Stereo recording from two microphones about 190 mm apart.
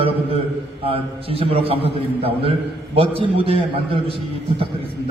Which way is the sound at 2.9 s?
30° right (ahead or behind).